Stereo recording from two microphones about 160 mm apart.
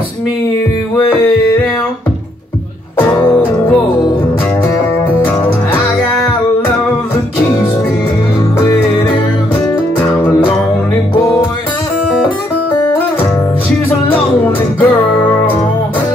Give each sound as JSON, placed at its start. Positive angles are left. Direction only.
{"t": 3.0, "sound": "music", "side_deg": 10}
{"t": 10.0, "sound": "music", "side_deg": 20}
{"t": 14.4, "sound": "music", "side_deg": 10}